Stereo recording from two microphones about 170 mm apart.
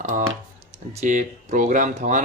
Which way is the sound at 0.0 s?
50° right (ahead or behind).